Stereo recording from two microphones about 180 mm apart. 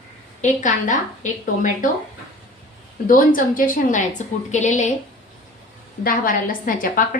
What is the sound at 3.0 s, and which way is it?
A woman's voice, 50° left (ahead or behind).